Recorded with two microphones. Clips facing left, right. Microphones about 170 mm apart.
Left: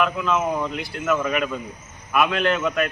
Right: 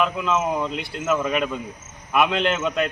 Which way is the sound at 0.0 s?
20° right (ahead or behind).